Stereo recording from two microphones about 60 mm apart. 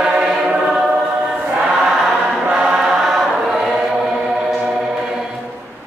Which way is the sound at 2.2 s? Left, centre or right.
Right.